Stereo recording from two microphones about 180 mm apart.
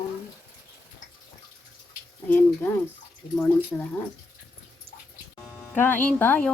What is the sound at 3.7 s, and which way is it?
Speech, 10° left (ahead or behind).